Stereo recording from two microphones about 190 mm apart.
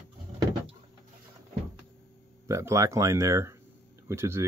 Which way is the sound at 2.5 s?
15° right (ahead or behind).